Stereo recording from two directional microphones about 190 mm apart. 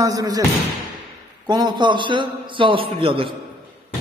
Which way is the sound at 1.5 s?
25° right (ahead or behind).